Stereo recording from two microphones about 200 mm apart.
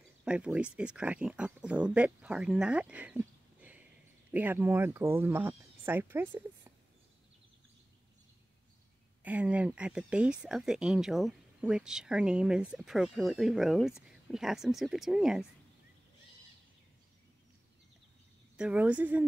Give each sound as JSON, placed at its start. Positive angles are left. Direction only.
{"t": 0.2, "sound": "speech", "side_deg": -5}
{"t": 9.2, "sound": "speech", "side_deg": -5}
{"t": 18.6, "sound": "speech", "side_deg": -5}